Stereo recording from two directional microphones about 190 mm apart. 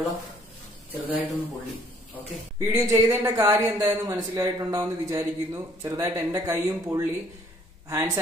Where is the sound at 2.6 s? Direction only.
15° right (ahead or behind).